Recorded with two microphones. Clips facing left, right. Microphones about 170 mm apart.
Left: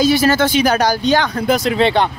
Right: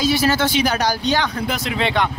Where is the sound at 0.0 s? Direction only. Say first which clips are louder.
Left 4 dB; 50° left (ahead or behind); by 2.0 s 35° left (ahead or behind).